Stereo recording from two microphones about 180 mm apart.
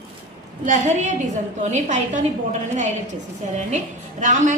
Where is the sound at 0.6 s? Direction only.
40° right (ahead or behind).